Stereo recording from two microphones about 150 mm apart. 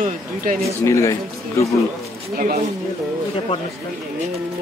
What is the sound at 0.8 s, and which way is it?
Speech, 20° left (ahead or behind).